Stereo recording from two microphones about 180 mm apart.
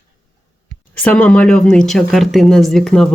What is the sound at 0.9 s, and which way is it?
Speech, 10° left (ahead or behind).